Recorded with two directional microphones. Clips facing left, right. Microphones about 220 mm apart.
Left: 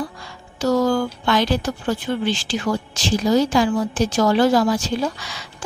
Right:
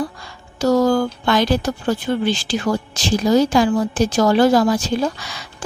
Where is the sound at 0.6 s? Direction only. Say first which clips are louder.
Right 3 dB; 40° right (ahead or behind).